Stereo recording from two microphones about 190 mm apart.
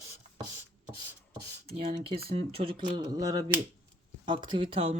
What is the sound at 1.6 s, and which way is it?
Speech, 30° right (ahead or behind).